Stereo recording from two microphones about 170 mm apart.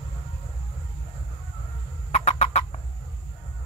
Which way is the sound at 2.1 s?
40° left (ahead or behind).